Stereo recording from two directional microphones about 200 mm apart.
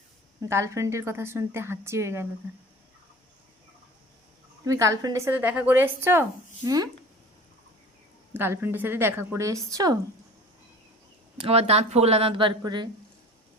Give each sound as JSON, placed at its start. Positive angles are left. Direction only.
{"t": 0.4, "sound": "a woman's voice", "side_deg": -15}
{"t": 4.6, "sound": "a woman's voice", "side_deg": -15}
{"t": 8.3, "sound": "a woman's voice", "side_deg": -10}
{"t": 11.3, "sound": "speech", "side_deg": -30}